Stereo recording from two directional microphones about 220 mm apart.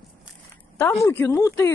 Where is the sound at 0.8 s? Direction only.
10° left (ahead or behind).